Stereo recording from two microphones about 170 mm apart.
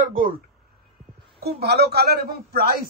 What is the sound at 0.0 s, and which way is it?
Speech, 55° right (ahead or behind).